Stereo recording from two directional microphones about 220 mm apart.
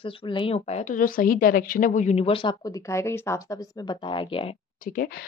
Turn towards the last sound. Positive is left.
turn(degrees=40)  # may be behind; listen again after turning